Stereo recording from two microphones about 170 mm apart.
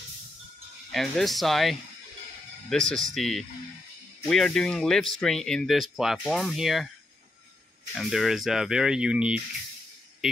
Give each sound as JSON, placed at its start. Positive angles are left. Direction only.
{"t": 0.9, "sound": "speech", "side_deg": 0}
{"t": 7.9, "sound": "speech", "side_deg": 0}